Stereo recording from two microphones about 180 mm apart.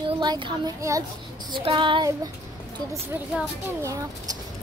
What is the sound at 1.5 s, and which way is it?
Speech, 30° right (ahead or behind).